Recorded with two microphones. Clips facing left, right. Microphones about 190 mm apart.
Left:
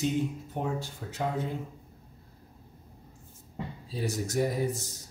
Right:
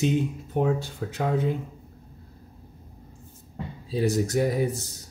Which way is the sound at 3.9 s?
70° right (ahead or behind).